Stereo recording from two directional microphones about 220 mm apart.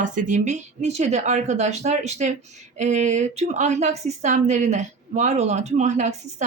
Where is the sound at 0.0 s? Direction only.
35° right (ahead or behind).